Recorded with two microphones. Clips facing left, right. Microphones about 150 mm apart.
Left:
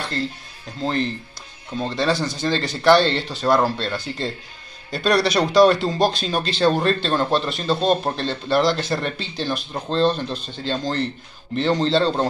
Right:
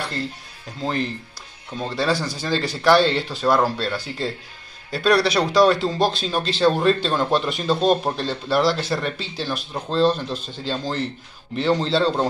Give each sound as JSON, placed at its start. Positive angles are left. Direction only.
{"t": 0.7, "sound": "speech", "side_deg": -5}